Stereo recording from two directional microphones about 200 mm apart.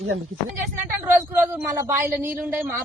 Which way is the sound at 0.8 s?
10° right (ahead or behind).